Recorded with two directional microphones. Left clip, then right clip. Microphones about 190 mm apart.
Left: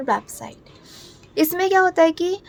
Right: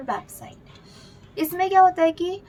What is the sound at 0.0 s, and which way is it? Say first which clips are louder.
A child's voice: left 7 dB; 50° left (ahead or behind).